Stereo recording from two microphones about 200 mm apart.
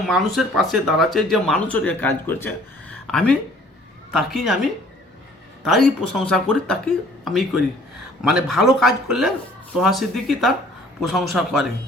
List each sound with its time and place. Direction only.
0.1 s speech: centre (ahead or behind)
5.6 s speech: centre (ahead or behind)